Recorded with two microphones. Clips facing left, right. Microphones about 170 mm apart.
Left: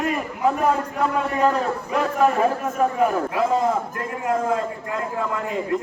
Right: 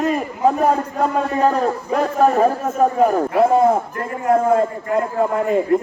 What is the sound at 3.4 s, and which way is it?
A man's voice, 55° right (ahead or behind).